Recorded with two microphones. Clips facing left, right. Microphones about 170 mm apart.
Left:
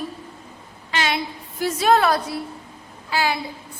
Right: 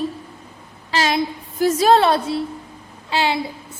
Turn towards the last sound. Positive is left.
turn(degrees=-25)  # may be behind; listen again after turning